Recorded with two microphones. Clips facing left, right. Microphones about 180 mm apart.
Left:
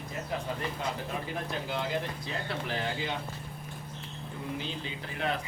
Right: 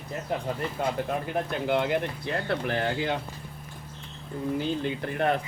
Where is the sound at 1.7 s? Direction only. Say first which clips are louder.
Right 8 dB; 60° right (ahead or behind).